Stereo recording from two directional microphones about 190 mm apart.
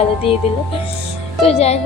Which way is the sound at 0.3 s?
30° left (ahead or behind).